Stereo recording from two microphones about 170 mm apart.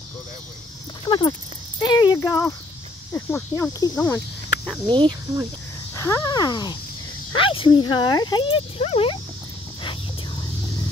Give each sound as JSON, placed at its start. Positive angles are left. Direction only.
{"t": 1.0, "sound": "speech", "side_deg": 25}
{"t": 1.8, "sound": "a sound", "side_deg": 25}
{"t": 2.1, "sound": "speech", "side_deg": 15}
{"t": 4.8, "sound": "speech", "side_deg": -30}
{"t": 5.9, "sound": "speech", "side_deg": 20}